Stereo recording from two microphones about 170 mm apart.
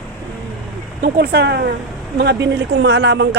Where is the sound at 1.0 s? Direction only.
70° right (ahead or behind).